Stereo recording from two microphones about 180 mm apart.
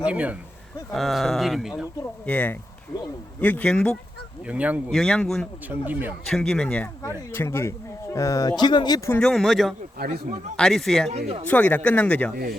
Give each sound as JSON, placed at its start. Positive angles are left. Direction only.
{"t": 0.0, "sound": "speech", "side_deg": -5}
{"t": 2.2, "sound": "speech", "side_deg": 10}
{"t": 4.4, "sound": "speech", "side_deg": -5}
{"t": 4.9, "sound": "speech", "side_deg": 5}
{"t": 5.6, "sound": "speech", "side_deg": -10}
{"t": 6.2, "sound": "speech", "side_deg": 5}
{"t": 10.0, "sound": "speech", "side_deg": -55}
{"t": 10.6, "sound": "speech", "side_deg": 0}